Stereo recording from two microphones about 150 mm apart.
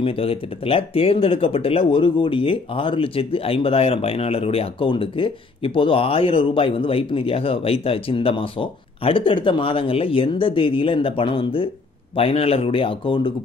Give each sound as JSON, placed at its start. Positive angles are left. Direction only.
{"t": 0.0, "sound": "speech", "side_deg": 40}